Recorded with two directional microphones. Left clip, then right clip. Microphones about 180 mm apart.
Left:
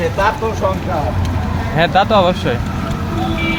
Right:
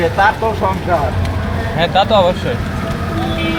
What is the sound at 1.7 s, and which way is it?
Speech, 40° left (ahead or behind).